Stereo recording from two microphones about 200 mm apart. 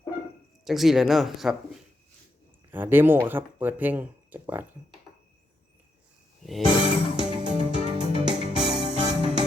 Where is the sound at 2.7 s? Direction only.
10° right (ahead or behind).